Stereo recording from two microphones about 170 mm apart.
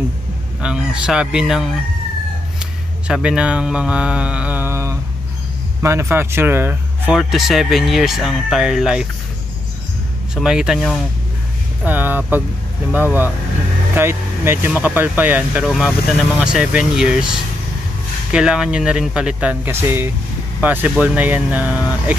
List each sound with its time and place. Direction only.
0.6 s speech: 5° right (ahead or behind)
3.1 s speech: 5° right (ahead or behind)
7.2 s speech: centre (ahead or behind)
10.3 s speech: 5° right (ahead or behind)